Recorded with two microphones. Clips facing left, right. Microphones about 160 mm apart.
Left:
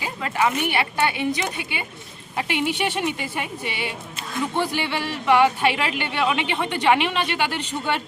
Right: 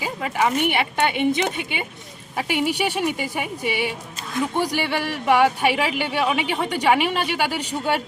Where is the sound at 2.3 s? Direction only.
5° right (ahead or behind).